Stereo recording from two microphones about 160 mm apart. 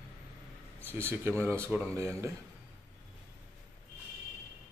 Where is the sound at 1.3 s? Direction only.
10° left (ahead or behind).